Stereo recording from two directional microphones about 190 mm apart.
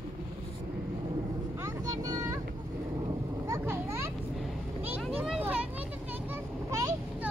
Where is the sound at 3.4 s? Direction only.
15° right (ahead or behind).